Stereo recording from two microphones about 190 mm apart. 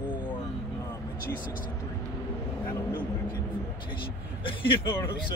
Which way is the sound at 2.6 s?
20° left (ahead or behind).